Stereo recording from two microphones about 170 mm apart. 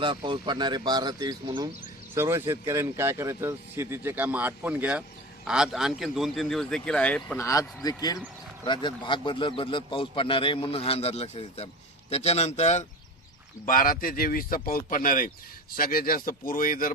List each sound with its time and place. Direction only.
0.0 s a man's voice: 25° right (ahead or behind); by 12.8 s 40° left (ahead or behind)
13.7 s speech: 55° left (ahead or behind)